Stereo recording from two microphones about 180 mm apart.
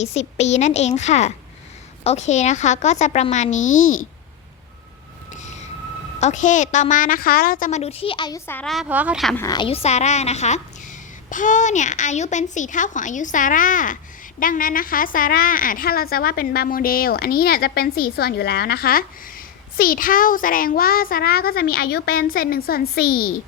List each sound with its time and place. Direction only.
0.0 s speech: 35° left (ahead or behind)
6.1 s a woman's voice: 40° left (ahead or behind)
8.4 s a woman's voice: 5° left (ahead or behind)
9.3 s a woman's voice: 20° left (ahead or behind); by 23.3 s 55° left (ahead or behind)